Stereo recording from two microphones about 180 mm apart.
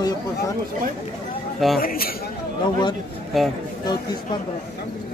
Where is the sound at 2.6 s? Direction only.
25° left (ahead or behind).